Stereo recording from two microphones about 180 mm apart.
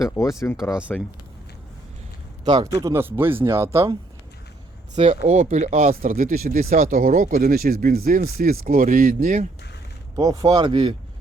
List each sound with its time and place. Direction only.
0.2 s speech: 15° left (ahead or behind)
0.7 s speech: 5° right (ahead or behind)
2.4 s a man's voice: 20° right (ahead or behind)
4.9 s speech: 35° right (ahead or behind)
10.2 s speech: 20° right (ahead or behind)